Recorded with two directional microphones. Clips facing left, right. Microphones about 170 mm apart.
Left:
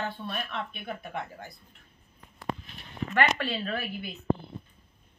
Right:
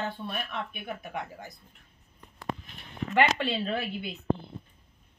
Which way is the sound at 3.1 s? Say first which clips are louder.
Right 2 dB; 20° right (ahead or behind).